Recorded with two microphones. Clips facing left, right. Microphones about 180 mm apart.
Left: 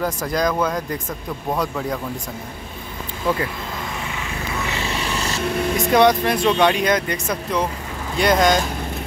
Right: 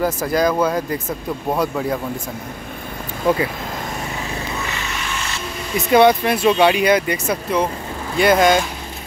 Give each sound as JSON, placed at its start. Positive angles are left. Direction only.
{"t": 0.0, "sound": "speech", "side_deg": -5}
{"t": 4.7, "sound": "a sound", "side_deg": 30}
{"t": 5.8, "sound": "speech", "side_deg": -5}